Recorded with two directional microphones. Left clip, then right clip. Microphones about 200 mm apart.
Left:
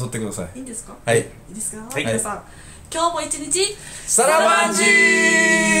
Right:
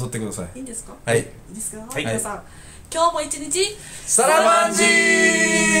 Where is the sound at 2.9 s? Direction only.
10° right (ahead or behind).